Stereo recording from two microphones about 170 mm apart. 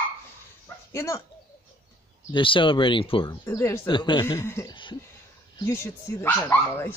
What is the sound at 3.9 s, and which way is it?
Speech, 30° left (ahead or behind).